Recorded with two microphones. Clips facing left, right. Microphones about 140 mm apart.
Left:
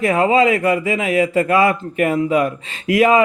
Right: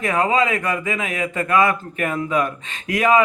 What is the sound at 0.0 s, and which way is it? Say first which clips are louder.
A man's voice: left 5 dB; 30° left (ahead or behind).